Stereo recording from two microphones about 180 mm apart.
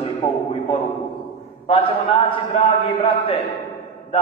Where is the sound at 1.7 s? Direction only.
30° left (ahead or behind).